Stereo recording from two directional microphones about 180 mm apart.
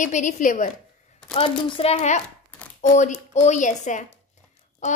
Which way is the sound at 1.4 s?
30° left (ahead or behind).